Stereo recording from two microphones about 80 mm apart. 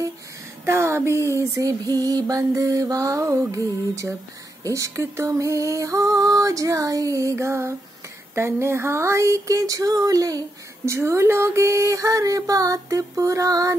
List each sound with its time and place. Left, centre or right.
0.7 s music: right
10.9 s music: right